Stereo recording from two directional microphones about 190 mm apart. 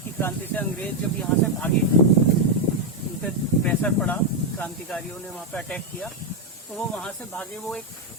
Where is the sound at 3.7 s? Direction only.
5° left (ahead or behind).